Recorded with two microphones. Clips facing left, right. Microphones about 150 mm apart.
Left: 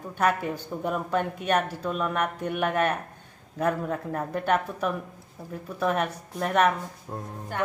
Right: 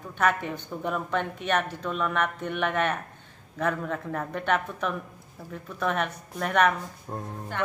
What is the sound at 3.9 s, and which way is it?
Speech, 20° left (ahead or behind).